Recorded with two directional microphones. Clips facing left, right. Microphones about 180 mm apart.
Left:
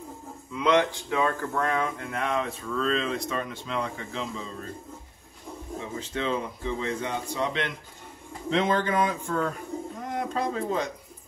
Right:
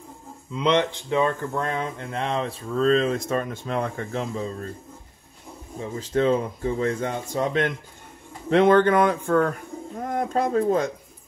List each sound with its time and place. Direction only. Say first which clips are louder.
0.6 s speech: right 1 dB; 25° right (ahead or behind); by 4.6 s 50° right (ahead or behind)
5.9 s a man's voice: right 8 dB; 45° right (ahead or behind)
8.5 s speech: right 8 dB; 60° right (ahead or behind)
9.9 s speech: right 7 dB; 50° right (ahead or behind)